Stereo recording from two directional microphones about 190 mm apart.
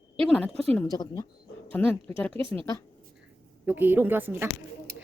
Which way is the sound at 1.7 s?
10° left (ahead or behind).